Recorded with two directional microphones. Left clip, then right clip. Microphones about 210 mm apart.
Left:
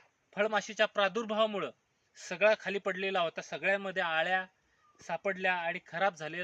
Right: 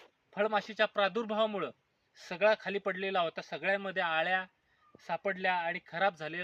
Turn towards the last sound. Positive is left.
turn(degrees=5)  # may be behind; listen again after turning